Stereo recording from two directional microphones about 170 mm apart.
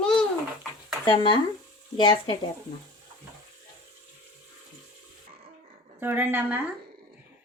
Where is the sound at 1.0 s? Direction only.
30° left (ahead or behind).